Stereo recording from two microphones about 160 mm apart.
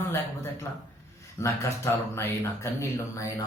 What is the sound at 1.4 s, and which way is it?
Speech, 15° left (ahead or behind).